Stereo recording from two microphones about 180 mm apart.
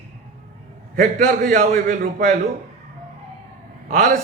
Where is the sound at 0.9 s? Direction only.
45° right (ahead or behind).